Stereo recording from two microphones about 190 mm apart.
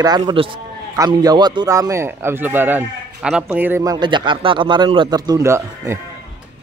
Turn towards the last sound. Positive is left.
turn(degrees=-15)  # may be behind; listen again after turning